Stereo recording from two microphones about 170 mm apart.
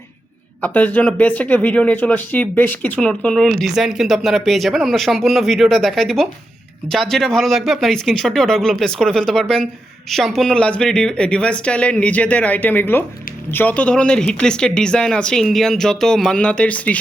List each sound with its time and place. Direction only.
0.6 s speech: 10° left (ahead or behind)